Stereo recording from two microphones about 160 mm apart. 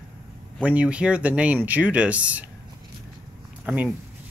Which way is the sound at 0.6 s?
5° right (ahead or behind).